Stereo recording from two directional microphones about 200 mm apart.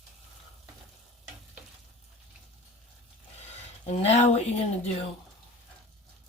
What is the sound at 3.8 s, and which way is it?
Speech, 30° left (ahead or behind).